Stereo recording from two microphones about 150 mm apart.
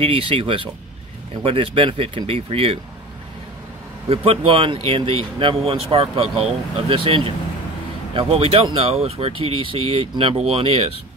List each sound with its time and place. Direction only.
0.0 s speech: 40° right (ahead or behind)
4.1 s speech: 40° right (ahead or behind)